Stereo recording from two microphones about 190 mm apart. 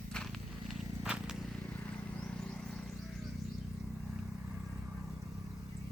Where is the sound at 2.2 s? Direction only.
5° left (ahead or behind).